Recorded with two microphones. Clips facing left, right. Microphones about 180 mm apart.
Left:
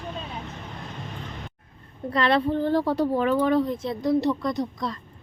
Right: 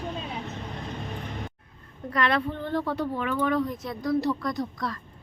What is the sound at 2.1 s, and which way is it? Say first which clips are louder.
Speech: left 4 dB; 30° left (ahead or behind).